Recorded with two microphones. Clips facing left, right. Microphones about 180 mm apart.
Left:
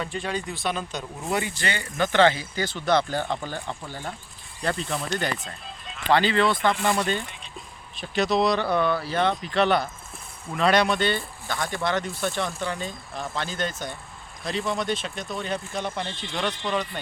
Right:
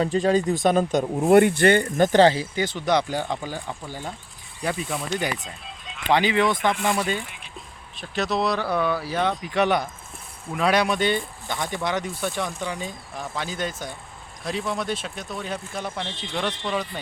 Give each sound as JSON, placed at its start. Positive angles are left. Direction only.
{"t": 0.0, "sound": "speech", "side_deg": -40}
{"t": 2.6, "sound": "speech", "side_deg": -15}
{"t": 6.1, "sound": "speech", "side_deg": -15}
{"t": 6.6, "sound": "speech", "side_deg": 0}